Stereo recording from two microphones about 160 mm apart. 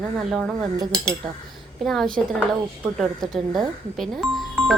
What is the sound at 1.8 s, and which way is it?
A woman's voice, centre (ahead or behind).